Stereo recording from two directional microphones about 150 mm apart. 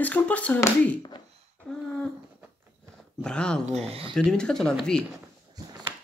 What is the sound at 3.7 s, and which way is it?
Speech, 45° right (ahead or behind).